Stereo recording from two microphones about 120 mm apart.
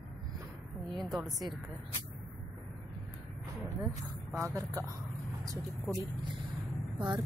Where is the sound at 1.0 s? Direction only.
Centre (ahead or behind).